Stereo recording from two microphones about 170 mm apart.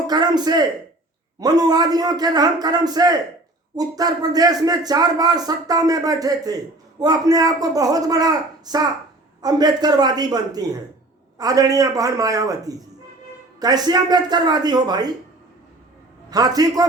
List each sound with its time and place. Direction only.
0.1 s speech: 25° right (ahead or behind)
16.3 s speech: 20° right (ahead or behind)